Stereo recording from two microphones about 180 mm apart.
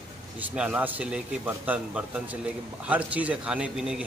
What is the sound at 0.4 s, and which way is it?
A man's voice, 5° right (ahead or behind).